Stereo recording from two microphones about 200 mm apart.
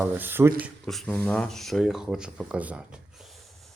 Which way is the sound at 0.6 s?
Centre (ahead or behind).